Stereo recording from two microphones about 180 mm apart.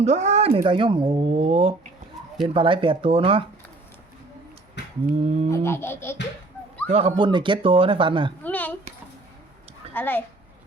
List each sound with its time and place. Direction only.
0.0 s speech: 40° right (ahead or behind)
2.2 s a sound: centre (ahead or behind)
2.5 s speech: 30° right (ahead or behind)
5.2 s speech: 35° right (ahead or behind)
5.5 s laughter: 15° left (ahead or behind)
6.8 s speech: 35° right (ahead or behind)
8.4 s a sound: 10° left (ahead or behind)
9.9 s laughter: 10° left (ahead or behind)